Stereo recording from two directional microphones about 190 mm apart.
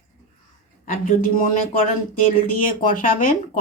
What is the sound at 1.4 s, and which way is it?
Speech, 45° left (ahead or behind).